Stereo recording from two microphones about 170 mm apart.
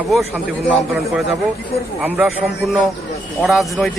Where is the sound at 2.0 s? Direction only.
5° right (ahead or behind).